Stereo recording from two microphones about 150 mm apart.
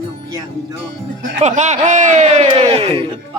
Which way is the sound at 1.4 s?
55° right (ahead or behind).